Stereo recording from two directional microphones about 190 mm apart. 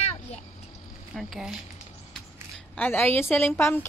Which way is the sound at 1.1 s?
Centre (ahead or behind).